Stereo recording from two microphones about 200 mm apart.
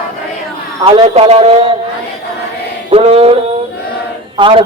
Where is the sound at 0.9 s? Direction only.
30° right (ahead or behind).